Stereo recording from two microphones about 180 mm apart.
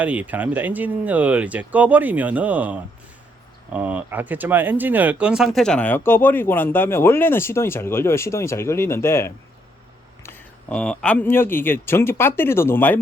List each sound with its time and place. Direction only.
0.0 s speech: 10° right (ahead or behind); by 13.0 s 10° left (ahead or behind)